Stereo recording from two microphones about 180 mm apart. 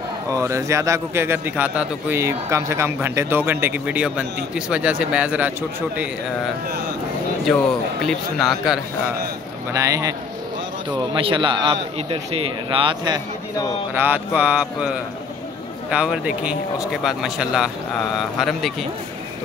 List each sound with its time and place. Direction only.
0.3 s a man's voice: 15° right (ahead or behind)
8.1 s speech: centre (ahead or behind)
9.7 s a man's voice: 20° right (ahead or behind)
11.1 s a man's voice: 30° right (ahead or behind)
13.9 s a man's voice: 10° right (ahead or behind)